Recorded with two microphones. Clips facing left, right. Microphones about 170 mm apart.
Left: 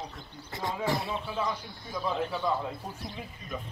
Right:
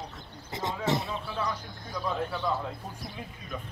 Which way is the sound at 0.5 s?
20° right (ahead or behind).